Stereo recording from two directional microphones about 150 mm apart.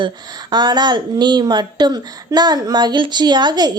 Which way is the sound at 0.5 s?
30° right (ahead or behind).